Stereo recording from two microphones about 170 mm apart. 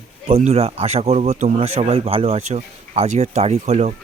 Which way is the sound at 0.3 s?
35° right (ahead or behind).